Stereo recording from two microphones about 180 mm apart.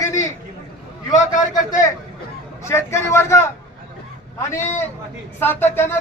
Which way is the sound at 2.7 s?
15° left (ahead or behind).